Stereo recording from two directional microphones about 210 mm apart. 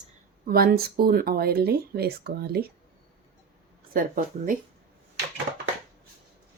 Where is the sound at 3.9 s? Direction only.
40° right (ahead or behind).